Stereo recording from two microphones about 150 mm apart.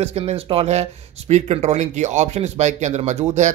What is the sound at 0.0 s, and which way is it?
Speech, 45° right (ahead or behind).